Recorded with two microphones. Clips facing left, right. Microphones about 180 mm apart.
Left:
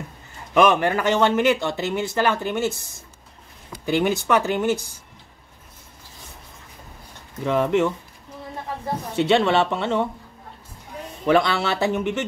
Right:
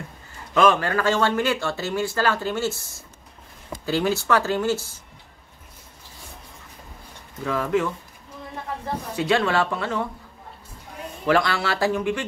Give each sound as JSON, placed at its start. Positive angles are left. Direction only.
{"t": 0.6, "sound": "speech", "side_deg": 20}
{"t": 7.4, "sound": "speech", "side_deg": 25}
{"t": 9.1, "sound": "speech", "side_deg": 25}
{"t": 11.2, "sound": "speech", "side_deg": 20}